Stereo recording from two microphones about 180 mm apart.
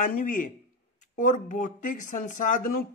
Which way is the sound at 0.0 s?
45° left (ahead or behind).